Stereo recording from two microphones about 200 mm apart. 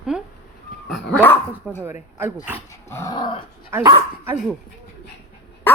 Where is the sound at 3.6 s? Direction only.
15° right (ahead or behind).